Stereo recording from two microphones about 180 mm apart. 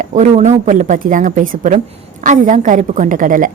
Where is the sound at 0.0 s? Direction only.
40° right (ahead or behind).